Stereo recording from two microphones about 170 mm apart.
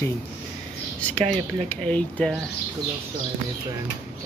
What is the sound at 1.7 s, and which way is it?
Speech, 10° left (ahead or behind).